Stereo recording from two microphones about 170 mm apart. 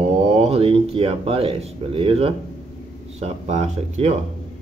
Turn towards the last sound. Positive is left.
turn(degrees=-40)  # may be behind; listen again after turning